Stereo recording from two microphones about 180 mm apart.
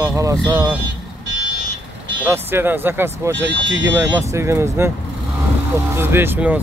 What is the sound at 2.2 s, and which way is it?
Speech, 10° right (ahead or behind).